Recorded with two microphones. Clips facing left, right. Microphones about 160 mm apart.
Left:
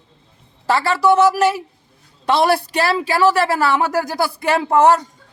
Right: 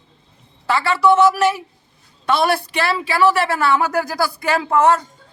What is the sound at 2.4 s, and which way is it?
A man's voice, 35° left (ahead or behind).